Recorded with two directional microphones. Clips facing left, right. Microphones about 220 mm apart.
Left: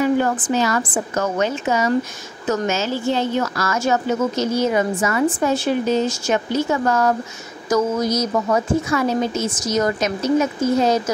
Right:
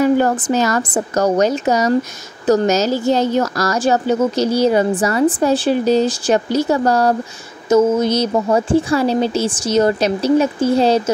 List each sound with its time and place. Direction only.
0.0 s a woman's voice: 40° right (ahead or behind)